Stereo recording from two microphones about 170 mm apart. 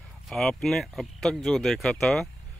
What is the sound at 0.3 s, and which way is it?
Speech, centre (ahead or behind).